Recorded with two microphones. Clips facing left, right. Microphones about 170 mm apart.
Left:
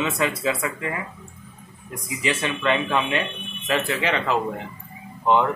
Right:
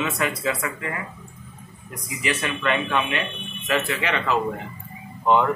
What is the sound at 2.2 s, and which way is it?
Speech, 30° left (ahead or behind).